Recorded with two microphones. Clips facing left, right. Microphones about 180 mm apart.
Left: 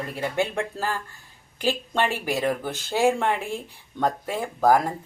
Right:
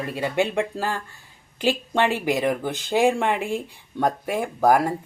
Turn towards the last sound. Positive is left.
turn(degrees=-10)  # may be behind; listen again after turning